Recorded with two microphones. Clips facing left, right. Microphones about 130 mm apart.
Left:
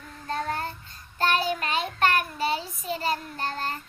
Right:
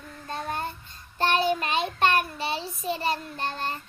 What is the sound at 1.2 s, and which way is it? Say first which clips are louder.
Child singing: right 2 dB; 25° right (ahead or behind).